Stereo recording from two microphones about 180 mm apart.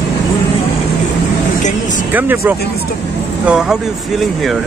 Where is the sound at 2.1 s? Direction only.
10° right (ahead or behind).